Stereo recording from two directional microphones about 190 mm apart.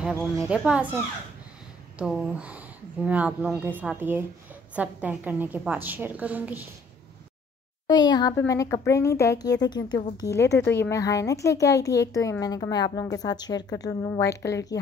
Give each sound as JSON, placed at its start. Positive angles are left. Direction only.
{"t": 0.0, "sound": "a woman's voice", "side_deg": 0}
{"t": 2.0, "sound": "a woman's voice", "side_deg": -5}
{"t": 7.8, "sound": "speech", "side_deg": 20}